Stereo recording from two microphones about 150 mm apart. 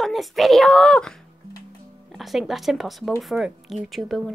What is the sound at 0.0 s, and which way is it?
Speech, centre (ahead or behind).